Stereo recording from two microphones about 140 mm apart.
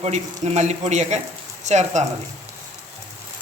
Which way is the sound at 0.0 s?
50° right (ahead or behind).